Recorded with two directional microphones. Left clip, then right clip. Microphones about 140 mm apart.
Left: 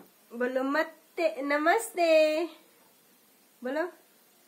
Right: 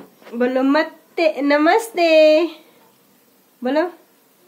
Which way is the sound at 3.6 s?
20° right (ahead or behind).